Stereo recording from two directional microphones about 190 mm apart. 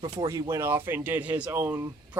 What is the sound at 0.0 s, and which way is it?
Speech, 20° right (ahead or behind).